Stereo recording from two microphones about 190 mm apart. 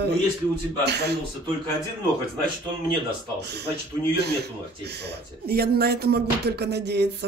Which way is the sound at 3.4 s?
60° right (ahead or behind).